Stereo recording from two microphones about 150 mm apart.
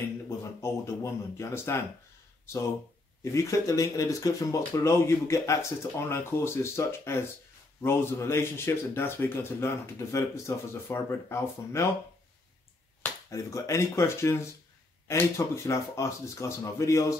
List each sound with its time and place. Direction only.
0.4 s speech: 20° left (ahead or behind)
3.3 s a man's voice: 20° left (ahead or behind)
13.0 s speech: 20° left (ahead or behind)